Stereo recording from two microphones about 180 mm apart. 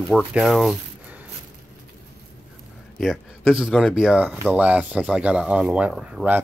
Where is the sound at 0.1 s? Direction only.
5° right (ahead or behind).